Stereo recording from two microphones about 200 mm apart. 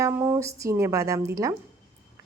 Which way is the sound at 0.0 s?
10° right (ahead or behind).